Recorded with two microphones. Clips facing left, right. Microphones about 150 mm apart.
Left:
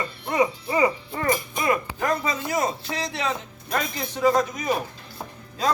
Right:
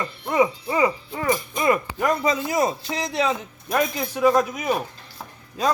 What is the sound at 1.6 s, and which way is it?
Speech, 20° right (ahead or behind).